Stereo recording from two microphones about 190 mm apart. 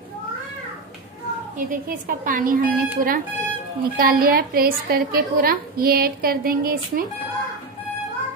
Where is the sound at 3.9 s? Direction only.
50° right (ahead or behind).